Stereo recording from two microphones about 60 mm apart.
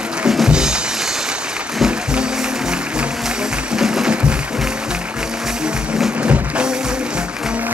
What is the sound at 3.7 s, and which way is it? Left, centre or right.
Music, centre.